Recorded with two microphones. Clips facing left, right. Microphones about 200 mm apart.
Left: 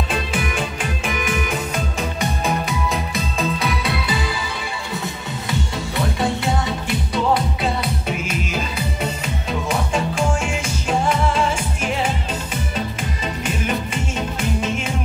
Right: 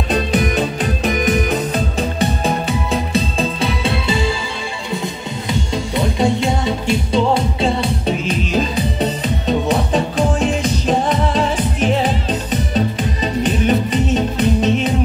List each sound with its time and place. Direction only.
0.1 s music: 35° right (ahead or behind)
5.9 s music: 20° right (ahead or behind)